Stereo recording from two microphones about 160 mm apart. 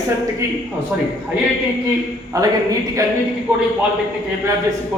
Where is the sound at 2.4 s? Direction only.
20° right (ahead or behind).